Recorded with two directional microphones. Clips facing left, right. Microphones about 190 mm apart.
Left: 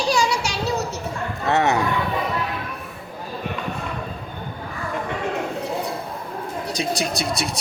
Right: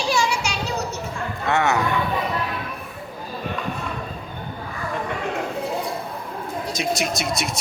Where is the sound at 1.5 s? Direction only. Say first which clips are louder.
Left 1 dB; 35° left (ahead or behind).